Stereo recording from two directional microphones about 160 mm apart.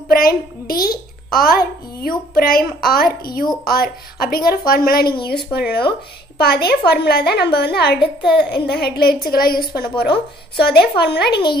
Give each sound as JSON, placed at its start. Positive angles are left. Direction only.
{"t": 0.1, "sound": "a child's voice", "side_deg": 65}
{"t": 5.2, "sound": "speech", "side_deg": 85}
{"t": 9.3, "sound": "a child's voice", "side_deg": 65}
{"t": 9.8, "sound": "speech", "side_deg": 80}